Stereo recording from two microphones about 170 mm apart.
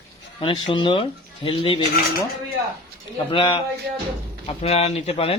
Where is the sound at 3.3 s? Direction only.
30° left (ahead or behind).